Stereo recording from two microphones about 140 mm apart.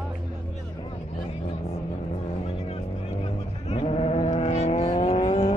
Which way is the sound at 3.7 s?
45° left (ahead or behind).